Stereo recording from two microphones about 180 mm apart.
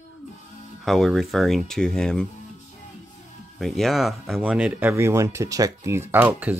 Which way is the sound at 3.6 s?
Centre (ahead or behind).